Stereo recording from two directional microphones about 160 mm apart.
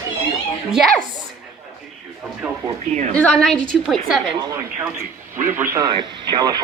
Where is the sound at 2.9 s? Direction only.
50° right (ahead or behind).